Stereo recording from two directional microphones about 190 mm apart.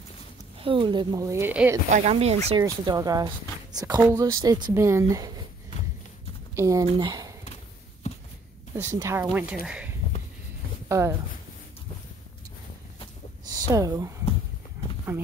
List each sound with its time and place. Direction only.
0.6 s speech: 25° right (ahead or behind); by 1.8 s 10° right (ahead or behind)
1.9 s speech: 35° right (ahead or behind)
2.6 s speech: 20° right (ahead or behind)
6.5 s speech: 15° right (ahead or behind)
8.0 s walk: 35° left (ahead or behind)
8.7 s speech: 15° right (ahead or behind)
9.7 s a sound: 5° right (ahead or behind)
10.9 s speech: 15° right (ahead or behind)
13.5 s speech: 20° right (ahead or behind)